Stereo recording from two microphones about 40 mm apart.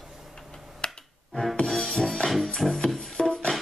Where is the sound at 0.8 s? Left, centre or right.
Left.